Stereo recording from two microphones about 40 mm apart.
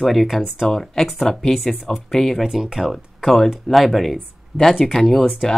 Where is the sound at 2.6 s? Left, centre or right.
Centre.